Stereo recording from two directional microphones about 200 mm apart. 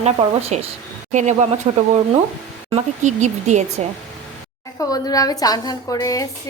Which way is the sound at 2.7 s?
35° right (ahead or behind).